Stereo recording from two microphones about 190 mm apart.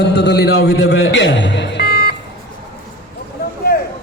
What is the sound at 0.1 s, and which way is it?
A man's voice, 60° left (ahead or behind).